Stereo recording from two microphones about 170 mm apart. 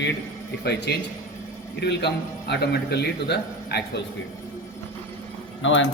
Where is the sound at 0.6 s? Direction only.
75° left (ahead or behind).